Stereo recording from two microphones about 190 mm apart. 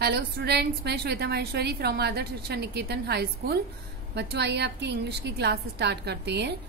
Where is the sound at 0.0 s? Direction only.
60° right (ahead or behind).